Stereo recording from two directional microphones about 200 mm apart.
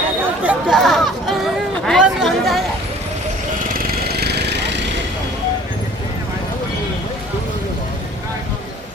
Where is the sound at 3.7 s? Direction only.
50° right (ahead or behind).